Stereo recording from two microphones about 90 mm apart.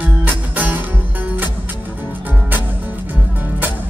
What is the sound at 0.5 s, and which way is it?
Music, 20° right (ahead or behind).